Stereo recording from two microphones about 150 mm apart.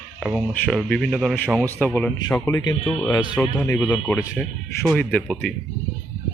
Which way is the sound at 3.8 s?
10° left (ahead or behind).